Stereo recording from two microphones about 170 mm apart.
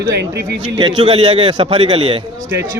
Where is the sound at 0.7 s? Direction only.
25° right (ahead or behind).